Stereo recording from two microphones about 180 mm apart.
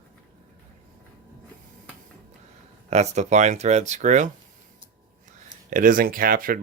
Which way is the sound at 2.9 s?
40° right (ahead or behind).